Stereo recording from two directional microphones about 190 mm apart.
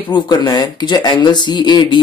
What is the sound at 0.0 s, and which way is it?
Speech, 25° left (ahead or behind).